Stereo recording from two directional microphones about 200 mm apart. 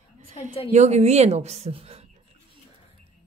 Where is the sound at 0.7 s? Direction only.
35° right (ahead or behind).